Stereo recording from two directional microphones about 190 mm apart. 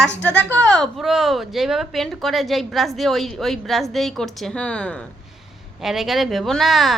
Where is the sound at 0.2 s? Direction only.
5° left (ahead or behind).